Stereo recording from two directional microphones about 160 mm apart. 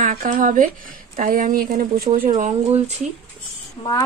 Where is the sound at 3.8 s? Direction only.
35° left (ahead or behind).